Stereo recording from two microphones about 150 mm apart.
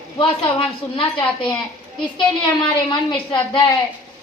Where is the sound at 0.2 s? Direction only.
35° left (ahead or behind).